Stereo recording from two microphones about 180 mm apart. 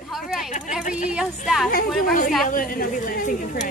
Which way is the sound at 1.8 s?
Centre (ahead or behind).